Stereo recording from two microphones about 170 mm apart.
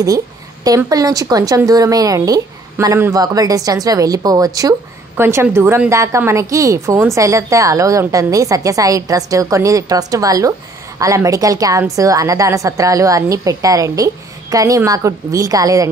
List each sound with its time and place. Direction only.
0.7 s a woman's voice: 20° right (ahead or behind)